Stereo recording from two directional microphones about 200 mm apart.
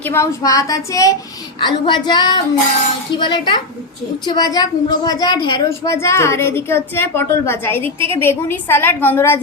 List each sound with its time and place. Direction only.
0.0 s a woman's voice: 15° left (ahead or behind)
1.5 s female singing: 25° left (ahead or behind)
4.3 s a woman's voice: 20° left (ahead or behind)